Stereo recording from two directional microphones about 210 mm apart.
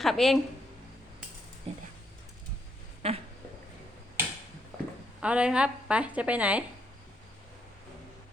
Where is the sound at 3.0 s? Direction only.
30° right (ahead or behind).